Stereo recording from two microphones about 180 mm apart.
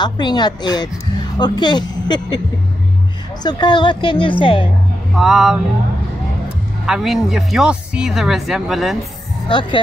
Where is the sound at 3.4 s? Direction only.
25° left (ahead or behind).